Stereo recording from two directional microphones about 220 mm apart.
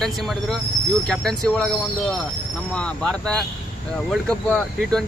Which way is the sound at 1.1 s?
Centre (ahead or behind).